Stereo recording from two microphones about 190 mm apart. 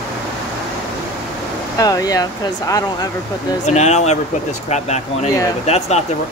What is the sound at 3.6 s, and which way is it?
Speech, 35° left (ahead or behind).